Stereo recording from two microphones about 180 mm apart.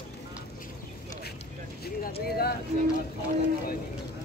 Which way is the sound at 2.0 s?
60° left (ahead or behind).